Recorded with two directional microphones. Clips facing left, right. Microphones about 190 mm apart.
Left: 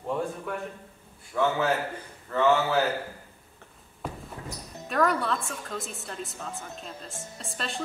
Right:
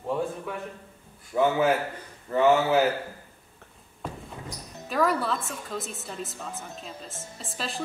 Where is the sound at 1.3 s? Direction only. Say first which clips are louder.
Right 3 dB; 15° right (ahead or behind).